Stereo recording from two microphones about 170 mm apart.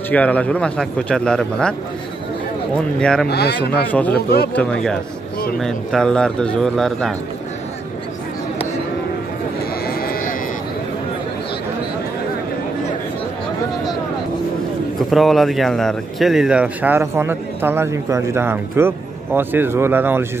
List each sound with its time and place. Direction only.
0.1 s speech: 10° left (ahead or behind)
3.0 s speech: 5° left (ahead or behind)
3.3 s speech: 70° left (ahead or behind)
3.9 s speech: 10° left (ahead or behind)
9.8 s a sound: 60° left (ahead or behind)
15.0 s speech: centre (ahead or behind)